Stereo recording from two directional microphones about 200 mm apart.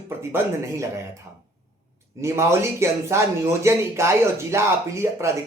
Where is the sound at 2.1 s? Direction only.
15° right (ahead or behind).